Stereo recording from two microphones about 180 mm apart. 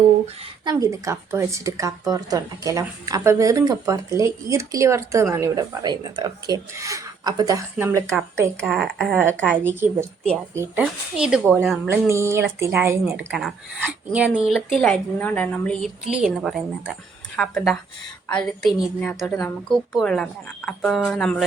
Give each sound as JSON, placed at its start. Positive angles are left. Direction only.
{"t": 0.6, "sound": "speech", "side_deg": -20}
{"t": 8.6, "sound": "a woman's voice", "side_deg": 0}
{"t": 9.6, "sound": "a woman's voice", "side_deg": -15}
{"t": 13.1, "sound": "a woman's voice", "side_deg": 0}